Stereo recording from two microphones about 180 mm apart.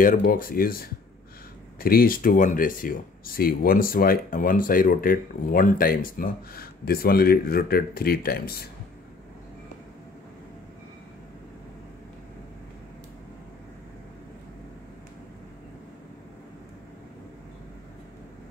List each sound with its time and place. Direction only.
0.0 s speech: 50° left (ahead or behind)